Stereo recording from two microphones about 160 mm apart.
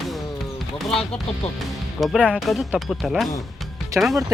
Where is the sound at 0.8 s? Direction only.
Centre (ahead or behind).